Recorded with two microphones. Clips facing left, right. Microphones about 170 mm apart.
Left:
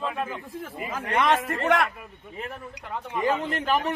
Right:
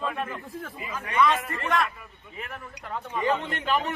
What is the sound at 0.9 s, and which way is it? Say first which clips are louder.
Speech: left 1 dB; 80° left.